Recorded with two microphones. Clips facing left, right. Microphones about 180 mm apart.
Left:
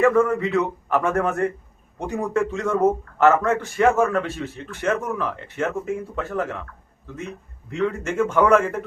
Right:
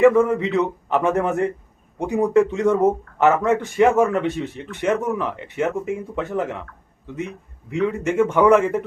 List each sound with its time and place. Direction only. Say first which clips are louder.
0.0 s speech: right 3 dB; 15° right (ahead or behind)
7.7 s speech: right 3 dB; 15° right (ahead or behind)